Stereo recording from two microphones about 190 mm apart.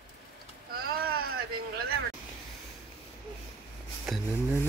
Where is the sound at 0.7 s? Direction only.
55° right (ahead or behind).